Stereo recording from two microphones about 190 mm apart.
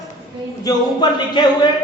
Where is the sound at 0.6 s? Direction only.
20° left (ahead or behind).